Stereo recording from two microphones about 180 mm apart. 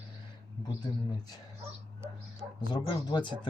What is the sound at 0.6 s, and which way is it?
Speech, 20° left (ahead or behind).